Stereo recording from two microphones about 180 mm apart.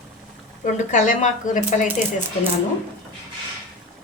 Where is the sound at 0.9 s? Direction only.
45° left (ahead or behind).